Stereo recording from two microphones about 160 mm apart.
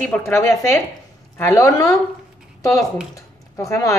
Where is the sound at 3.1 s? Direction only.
20° left (ahead or behind).